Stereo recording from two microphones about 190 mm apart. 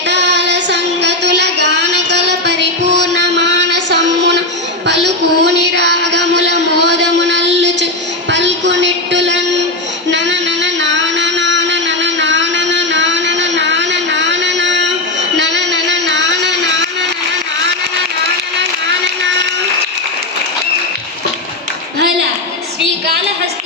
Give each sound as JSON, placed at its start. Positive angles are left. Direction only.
{"t": 0.1, "sound": "child singing", "side_deg": -65}
{"t": 4.9, "sound": "a sound", "side_deg": -65}
{"t": 10.1, "sound": "music", "side_deg": -70}